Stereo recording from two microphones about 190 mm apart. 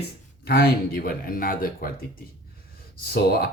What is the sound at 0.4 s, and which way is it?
Speech, 55° left (ahead or behind).